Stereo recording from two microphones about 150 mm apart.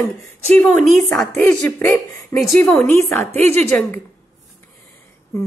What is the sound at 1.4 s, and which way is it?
A woman's voice, 15° left (ahead or behind).